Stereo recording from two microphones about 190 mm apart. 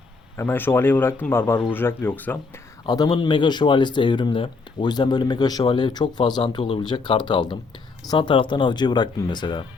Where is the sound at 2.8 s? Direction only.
20° left (ahead or behind).